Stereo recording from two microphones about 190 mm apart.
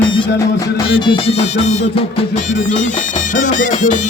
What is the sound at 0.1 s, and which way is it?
Music, 20° left (ahead or behind).